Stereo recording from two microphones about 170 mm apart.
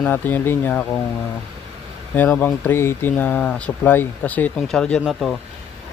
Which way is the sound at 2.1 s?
10° left (ahead or behind).